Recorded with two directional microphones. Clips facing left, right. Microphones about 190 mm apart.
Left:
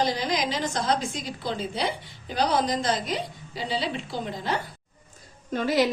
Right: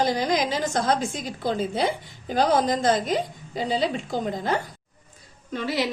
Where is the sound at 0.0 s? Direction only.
50° right (ahead or behind).